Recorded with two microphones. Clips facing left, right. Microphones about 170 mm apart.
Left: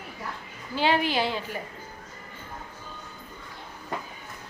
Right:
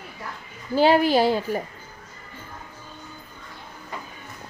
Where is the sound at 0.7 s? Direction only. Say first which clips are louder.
Right 7 dB; 40° right (ahead or behind).